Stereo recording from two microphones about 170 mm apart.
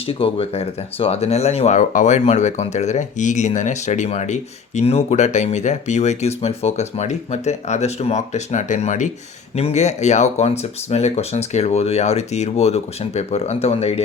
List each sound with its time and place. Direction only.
0.1 s speech: 35° left (ahead or behind)